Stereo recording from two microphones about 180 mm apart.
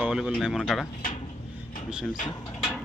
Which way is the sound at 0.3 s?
Centre (ahead or behind).